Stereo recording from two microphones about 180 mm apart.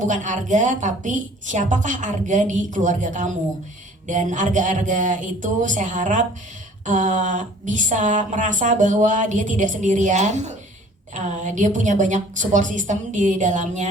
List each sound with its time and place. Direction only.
0.1 s speech: 45° right (ahead or behind)